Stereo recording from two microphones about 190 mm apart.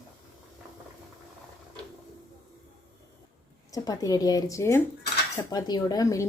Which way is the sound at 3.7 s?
20° left (ahead or behind).